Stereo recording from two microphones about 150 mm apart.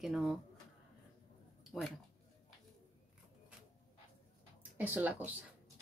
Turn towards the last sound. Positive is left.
turn(degrees=-10)  # may be behind; listen again after turning